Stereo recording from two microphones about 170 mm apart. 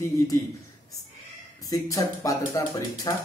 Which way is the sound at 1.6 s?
20° left (ahead or behind).